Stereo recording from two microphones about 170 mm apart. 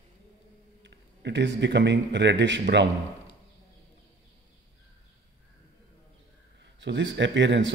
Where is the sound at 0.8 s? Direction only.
90° right.